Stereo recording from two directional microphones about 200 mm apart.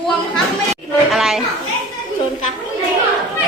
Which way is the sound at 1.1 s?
Centre (ahead or behind).